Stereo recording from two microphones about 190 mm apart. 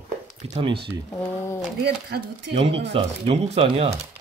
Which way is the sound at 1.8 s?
65° right (ahead or behind).